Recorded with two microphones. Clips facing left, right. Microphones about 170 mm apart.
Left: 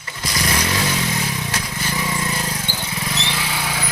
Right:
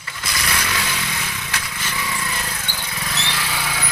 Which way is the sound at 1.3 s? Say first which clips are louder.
Left 4 dB; 35° left (ahead or behind).